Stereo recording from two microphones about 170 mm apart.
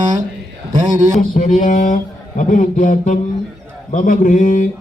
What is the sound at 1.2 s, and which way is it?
Speech, 50° left (ahead or behind).